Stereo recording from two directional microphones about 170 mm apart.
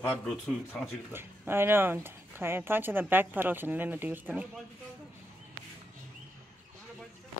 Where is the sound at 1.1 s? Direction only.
15° right (ahead or behind).